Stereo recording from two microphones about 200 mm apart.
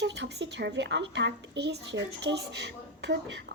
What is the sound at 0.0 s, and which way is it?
A woman's voice, 60° right (ahead or behind).